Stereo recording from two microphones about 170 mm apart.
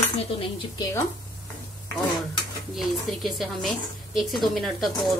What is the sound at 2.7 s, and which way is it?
Speech, centre (ahead or behind).